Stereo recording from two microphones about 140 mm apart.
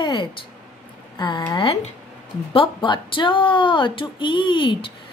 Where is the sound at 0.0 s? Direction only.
35° left (ahead or behind).